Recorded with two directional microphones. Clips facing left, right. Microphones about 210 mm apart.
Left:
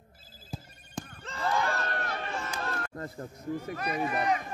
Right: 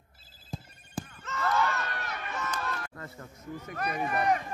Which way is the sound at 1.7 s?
30° left (ahead or behind).